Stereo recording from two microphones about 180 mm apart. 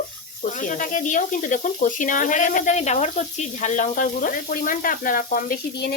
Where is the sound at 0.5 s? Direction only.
45° left (ahead or behind).